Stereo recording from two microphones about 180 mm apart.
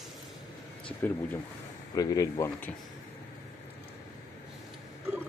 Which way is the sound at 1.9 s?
20° left (ahead or behind).